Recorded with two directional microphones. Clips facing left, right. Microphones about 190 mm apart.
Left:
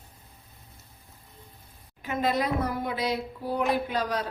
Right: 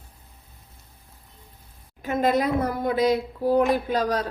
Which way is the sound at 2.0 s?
45° right (ahead or behind).